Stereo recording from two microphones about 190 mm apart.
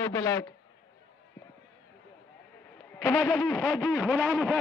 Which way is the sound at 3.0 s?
5° left (ahead or behind).